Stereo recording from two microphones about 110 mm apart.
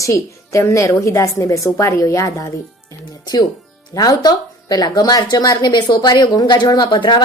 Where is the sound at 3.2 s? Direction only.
40° left (ahead or behind).